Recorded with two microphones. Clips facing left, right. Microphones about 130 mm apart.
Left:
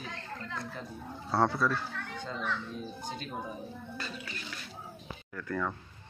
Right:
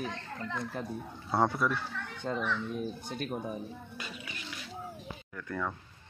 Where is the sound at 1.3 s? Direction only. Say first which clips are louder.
Even; 15° right (ahead or behind).